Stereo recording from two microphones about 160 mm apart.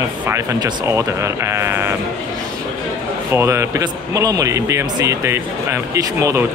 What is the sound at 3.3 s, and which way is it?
A man's voice, 15° right (ahead or behind).